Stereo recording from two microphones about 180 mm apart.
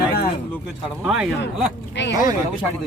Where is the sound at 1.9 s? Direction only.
80° left.